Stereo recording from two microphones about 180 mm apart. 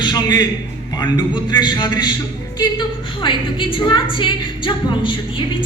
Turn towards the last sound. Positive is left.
turn(degrees=25)  # may be behind; listen again after turning